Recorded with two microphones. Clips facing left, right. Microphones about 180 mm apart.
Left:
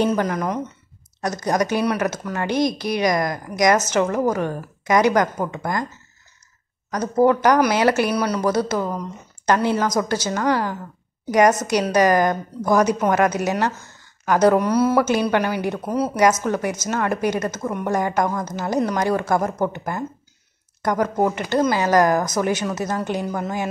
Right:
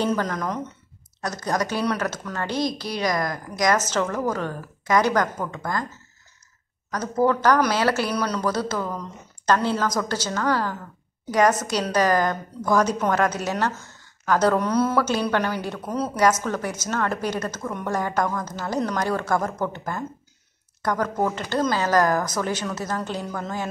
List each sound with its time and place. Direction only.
0.0 s speech: 15° left (ahead or behind)
6.9 s speech: 15° left (ahead or behind)